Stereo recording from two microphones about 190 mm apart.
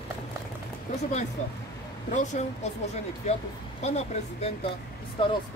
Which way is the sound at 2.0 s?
40° left (ahead or behind).